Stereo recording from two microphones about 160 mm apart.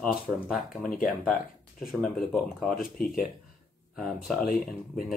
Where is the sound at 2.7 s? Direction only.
65° left (ahead or behind).